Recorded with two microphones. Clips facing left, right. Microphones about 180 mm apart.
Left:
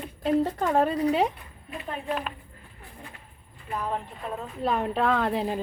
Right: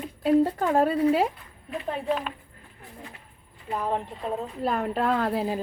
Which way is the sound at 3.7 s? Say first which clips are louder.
Right 3 dB; 25° right (ahead or behind).